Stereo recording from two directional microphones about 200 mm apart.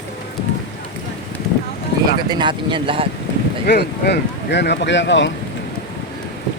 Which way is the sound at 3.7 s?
55° left (ahead or behind).